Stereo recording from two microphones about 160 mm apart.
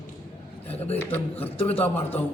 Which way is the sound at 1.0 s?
10° left (ahead or behind).